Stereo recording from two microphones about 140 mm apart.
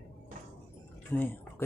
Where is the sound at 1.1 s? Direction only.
15° left (ahead or behind).